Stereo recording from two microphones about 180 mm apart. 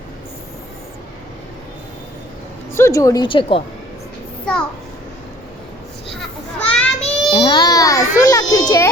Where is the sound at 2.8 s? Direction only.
15° left (ahead or behind).